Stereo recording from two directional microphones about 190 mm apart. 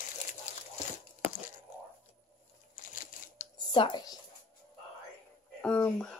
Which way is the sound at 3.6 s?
25° left (ahead or behind).